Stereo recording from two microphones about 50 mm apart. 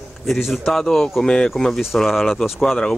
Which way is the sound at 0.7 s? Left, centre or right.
Centre.